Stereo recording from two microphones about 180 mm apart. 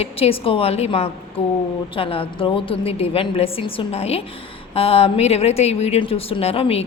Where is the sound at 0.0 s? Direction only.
30° left (ahead or behind).